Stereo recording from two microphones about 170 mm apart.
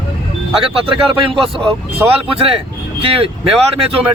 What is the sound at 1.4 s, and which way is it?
Speech, 30° right (ahead or behind).